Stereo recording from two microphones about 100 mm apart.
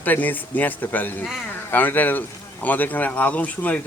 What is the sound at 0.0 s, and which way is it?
Speech, 15° left (ahead or behind).